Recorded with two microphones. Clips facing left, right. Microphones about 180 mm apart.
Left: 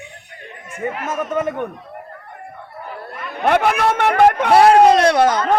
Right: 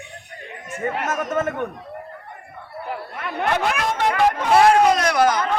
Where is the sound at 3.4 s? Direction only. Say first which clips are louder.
Left 7 dB; 60° left (ahead or behind).